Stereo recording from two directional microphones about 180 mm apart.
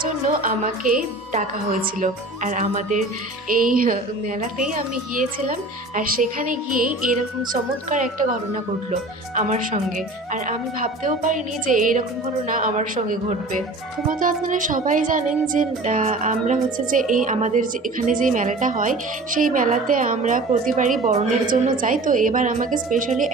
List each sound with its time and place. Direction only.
0.0 s a woman's voice: 50° right (ahead or behind)